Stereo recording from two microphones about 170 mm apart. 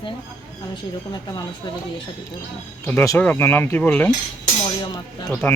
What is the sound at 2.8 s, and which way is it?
Speech, 15° left (ahead or behind).